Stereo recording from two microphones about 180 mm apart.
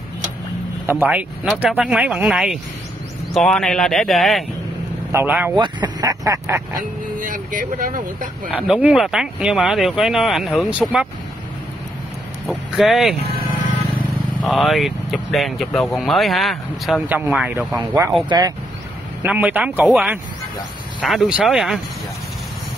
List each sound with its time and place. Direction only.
0.8 s speech: 10° right (ahead or behind)
5.1 s speech: 10° right (ahead or behind)
5.6 s speech: 20° right (ahead or behind)
7.2 s speech: 50° right (ahead or behind)
8.5 s speech: 5° right (ahead or behind)
12.7 s speech: centre (ahead or behind)
14.4 s speech: centre (ahead or behind)
17.7 s speech: 15° right (ahead or behind)
19.2 s speech: 10° right (ahead or behind)